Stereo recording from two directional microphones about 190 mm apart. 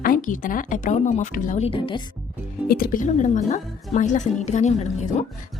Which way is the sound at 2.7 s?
50° left (ahead or behind).